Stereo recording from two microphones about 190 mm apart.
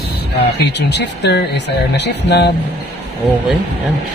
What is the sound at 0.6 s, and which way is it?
Speech, 65° left (ahead or behind).